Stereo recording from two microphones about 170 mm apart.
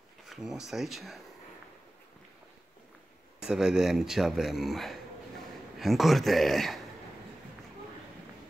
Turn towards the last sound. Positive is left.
turn(degrees=0)  # may be behind; listen again after turning